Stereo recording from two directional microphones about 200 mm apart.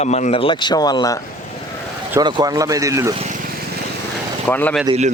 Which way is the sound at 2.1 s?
20° right (ahead or behind).